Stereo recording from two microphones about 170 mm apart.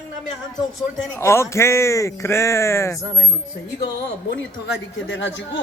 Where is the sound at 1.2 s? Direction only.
15° left (ahead or behind).